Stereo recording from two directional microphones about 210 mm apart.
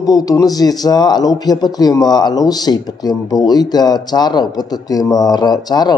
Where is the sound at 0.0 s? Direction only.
15° left (ahead or behind).